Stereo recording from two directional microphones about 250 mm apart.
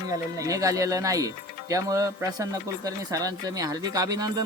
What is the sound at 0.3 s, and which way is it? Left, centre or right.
Speech, centre.